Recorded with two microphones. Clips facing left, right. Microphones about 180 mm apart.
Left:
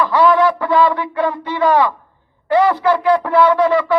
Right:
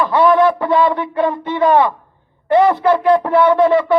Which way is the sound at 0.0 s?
20° right (ahead or behind).